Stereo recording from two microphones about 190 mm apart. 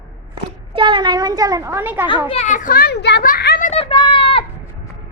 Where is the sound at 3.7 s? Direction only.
30° left (ahead or behind).